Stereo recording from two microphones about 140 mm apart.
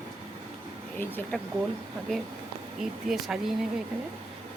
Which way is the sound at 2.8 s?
5° right (ahead or behind).